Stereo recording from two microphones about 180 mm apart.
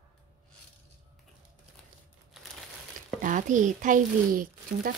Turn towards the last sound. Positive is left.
turn(degrees=-50)  # may be behind; listen again after turning